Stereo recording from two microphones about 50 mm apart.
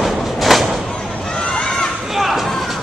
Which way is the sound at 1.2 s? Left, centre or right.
Left.